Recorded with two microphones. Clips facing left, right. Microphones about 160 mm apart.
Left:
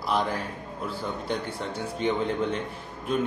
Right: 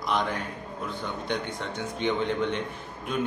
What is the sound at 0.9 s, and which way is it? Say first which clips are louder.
Speech: left 1 dB; 5° left (ahead or behind).